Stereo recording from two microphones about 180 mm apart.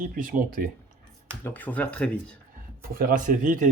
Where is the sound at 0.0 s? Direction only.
50° right (ahead or behind).